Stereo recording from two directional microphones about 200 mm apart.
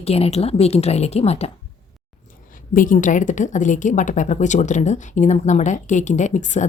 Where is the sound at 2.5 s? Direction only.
40° left (ahead or behind).